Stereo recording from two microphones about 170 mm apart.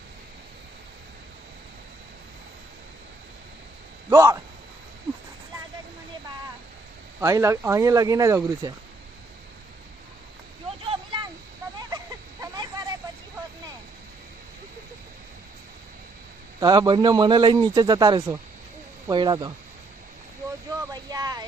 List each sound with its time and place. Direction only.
4.1 s a man's voice: 20° right (ahead or behind)
7.2 s a man's voice: 15° right (ahead or behind)
10.8 s vehicle: 30° right (ahead or behind)
12.4 s a sound: 25° right (ahead or behind)
16.6 s a man's voice: 25° right (ahead or behind)
20.8 s a sound: 20° right (ahead or behind)